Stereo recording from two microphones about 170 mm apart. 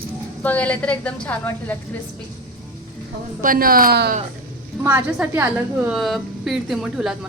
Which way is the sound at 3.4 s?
55° right (ahead or behind).